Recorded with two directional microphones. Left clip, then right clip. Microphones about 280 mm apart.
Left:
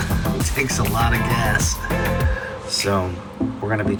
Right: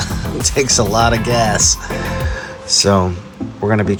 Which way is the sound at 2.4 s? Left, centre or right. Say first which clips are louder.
Right 7 dB; right.